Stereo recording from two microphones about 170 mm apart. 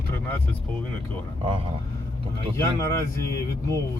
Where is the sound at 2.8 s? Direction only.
15° left (ahead or behind).